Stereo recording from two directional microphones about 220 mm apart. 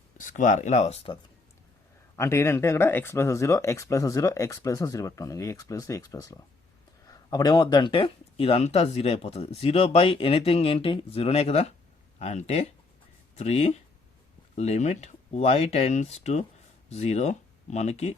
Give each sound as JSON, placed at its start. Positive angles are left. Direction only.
{"t": 0.2, "sound": "speech", "side_deg": 35}
{"t": 2.1, "sound": "speech", "side_deg": 10}